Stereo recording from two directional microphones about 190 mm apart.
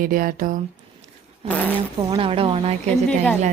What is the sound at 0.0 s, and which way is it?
Speech, 50° right (ahead or behind).